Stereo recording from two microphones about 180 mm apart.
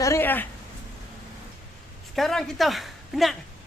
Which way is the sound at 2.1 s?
Centre (ahead or behind).